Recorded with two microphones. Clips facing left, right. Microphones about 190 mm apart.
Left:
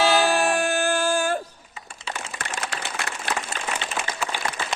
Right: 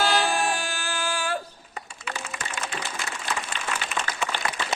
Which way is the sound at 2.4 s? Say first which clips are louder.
Left 3 dB; 65° left (ahead or behind).